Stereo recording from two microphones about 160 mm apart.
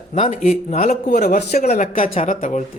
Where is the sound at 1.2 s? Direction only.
85° left.